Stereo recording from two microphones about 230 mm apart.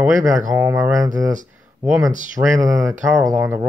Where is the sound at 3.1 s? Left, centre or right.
Centre.